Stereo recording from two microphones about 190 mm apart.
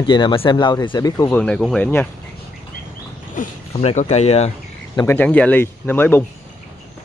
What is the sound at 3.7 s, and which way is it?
Speech, 35° left (ahead or behind).